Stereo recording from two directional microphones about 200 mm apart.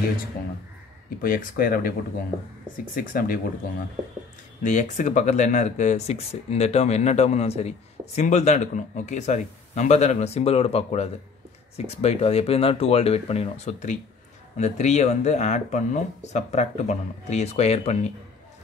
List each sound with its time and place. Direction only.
1.2 s speech: 45° left (ahead or behind)
4.6 s speech: 35° left (ahead or behind)